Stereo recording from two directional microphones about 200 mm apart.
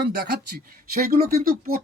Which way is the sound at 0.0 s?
55° right (ahead or behind).